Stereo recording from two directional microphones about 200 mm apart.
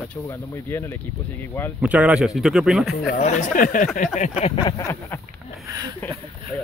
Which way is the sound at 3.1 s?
35° left (ahead or behind).